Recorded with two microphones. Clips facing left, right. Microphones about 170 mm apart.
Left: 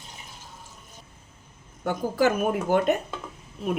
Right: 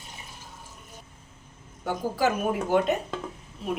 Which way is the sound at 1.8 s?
50° left (ahead or behind).